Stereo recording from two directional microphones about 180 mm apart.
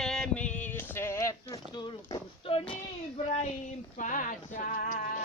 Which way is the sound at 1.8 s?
30° left (ahead or behind).